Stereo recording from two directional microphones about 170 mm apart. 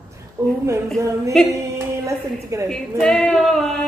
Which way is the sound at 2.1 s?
15° right (ahead or behind).